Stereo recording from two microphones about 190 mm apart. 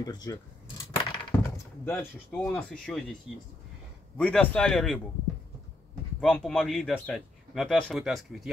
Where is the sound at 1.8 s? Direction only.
10° left (ahead or behind).